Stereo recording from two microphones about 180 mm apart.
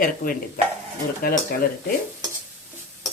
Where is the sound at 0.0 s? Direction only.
55° left (ahead or behind).